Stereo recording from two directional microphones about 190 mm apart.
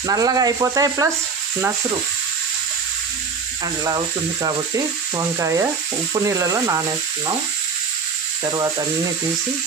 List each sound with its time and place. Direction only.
0.1 s speech: 20° right (ahead or behind)
3.6 s speech: 20° right (ahead or behind)
8.5 s speech: 20° right (ahead or behind)